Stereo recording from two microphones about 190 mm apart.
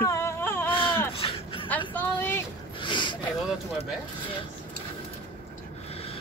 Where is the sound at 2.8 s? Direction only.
25° left (ahead or behind).